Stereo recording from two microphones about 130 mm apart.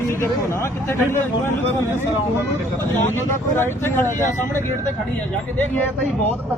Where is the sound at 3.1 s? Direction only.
20° left (ahead or behind).